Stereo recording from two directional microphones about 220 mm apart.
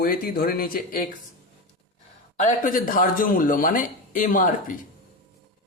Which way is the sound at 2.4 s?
35° left (ahead or behind).